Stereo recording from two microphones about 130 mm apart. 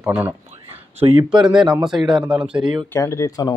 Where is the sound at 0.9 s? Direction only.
50° right (ahead or behind).